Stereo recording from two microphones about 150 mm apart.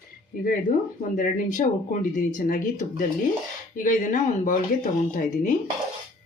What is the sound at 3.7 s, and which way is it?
Speech, 65° left (ahead or behind).